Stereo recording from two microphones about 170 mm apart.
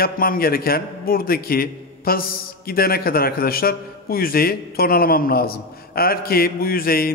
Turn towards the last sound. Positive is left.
turn(degrees=60)  # may be behind; listen again after turning